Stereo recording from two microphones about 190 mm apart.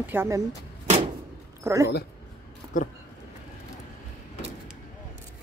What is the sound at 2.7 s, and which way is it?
Speech, 45° left (ahead or behind).